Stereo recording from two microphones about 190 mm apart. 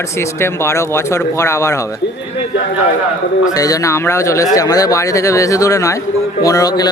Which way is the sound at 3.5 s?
20° left (ahead or behind).